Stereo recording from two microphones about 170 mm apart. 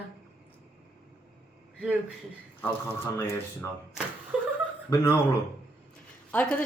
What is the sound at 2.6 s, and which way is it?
Speech, 15° left (ahead or behind).